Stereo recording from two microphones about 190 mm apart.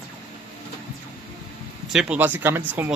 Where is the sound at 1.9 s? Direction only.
5° right (ahead or behind).